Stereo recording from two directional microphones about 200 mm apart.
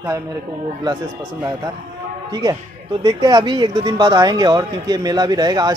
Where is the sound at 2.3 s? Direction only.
20° right (ahead or behind).